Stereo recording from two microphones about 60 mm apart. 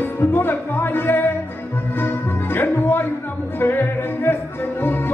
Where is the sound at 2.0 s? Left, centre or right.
Left.